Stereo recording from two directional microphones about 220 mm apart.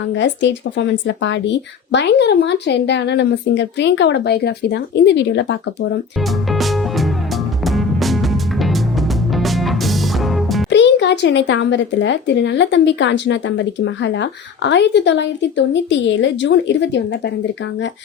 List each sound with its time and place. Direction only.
0.1 s speech: 55° left (ahead or behind)
6.5 s music: centre (ahead or behind)
10.7 s speech: 55° left (ahead or behind)